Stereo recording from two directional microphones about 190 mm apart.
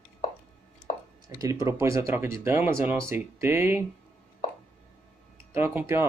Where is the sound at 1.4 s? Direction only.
15° right (ahead or behind).